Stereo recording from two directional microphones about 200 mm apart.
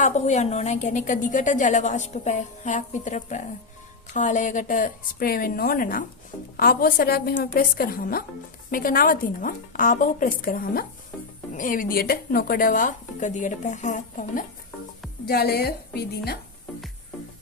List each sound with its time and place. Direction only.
0.0 s a woman's voice: 35° left (ahead or behind)
15.3 s speech: 50° left (ahead or behind)